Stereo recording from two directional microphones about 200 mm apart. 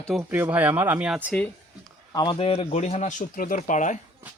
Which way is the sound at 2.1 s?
20° left (ahead or behind).